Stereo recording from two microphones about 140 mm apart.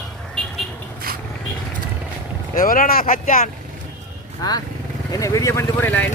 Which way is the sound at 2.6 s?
80° left.